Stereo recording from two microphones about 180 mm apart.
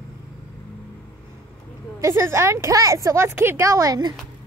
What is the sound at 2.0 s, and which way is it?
A woman's voice, 15° right (ahead or behind).